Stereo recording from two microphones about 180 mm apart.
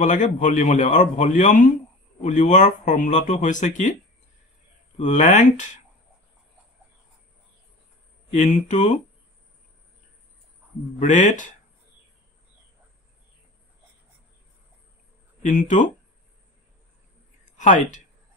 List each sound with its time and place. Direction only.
0.0 s a man's voice: 45° left (ahead or behind)
4.9 s a man's voice: 40° left (ahead or behind)
8.3 s speech: 40° left (ahead or behind)
11.0 s a man's voice: 45° left (ahead or behind)
15.4 s a man's voice: 45° left (ahead or behind)